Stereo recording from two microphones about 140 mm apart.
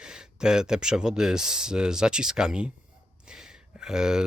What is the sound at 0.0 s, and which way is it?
Speech, 5° right (ahead or behind).